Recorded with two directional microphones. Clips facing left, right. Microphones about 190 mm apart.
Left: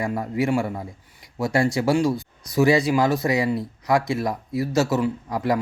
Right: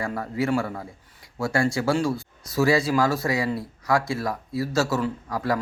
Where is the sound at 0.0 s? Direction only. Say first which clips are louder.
Left 3 dB; 15° left (ahead or behind).